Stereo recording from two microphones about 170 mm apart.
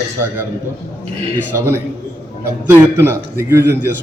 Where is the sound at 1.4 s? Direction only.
15° right (ahead or behind).